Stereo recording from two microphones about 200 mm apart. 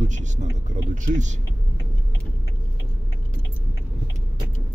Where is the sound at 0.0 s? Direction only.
35° right (ahead or behind).